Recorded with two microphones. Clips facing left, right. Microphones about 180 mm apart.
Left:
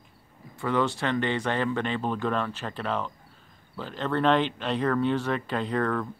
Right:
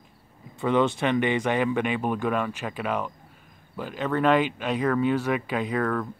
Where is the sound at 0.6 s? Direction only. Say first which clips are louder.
Right 4 dB; 20° right (ahead or behind).